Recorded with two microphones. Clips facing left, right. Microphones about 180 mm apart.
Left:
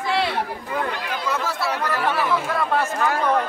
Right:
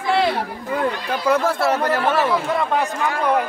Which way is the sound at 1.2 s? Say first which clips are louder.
Right 8 dB; 55° right (ahead or behind).